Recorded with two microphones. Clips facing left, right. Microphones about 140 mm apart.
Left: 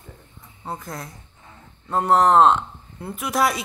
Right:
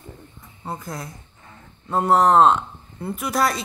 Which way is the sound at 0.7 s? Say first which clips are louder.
Right 1 dB; centre (ahead or behind).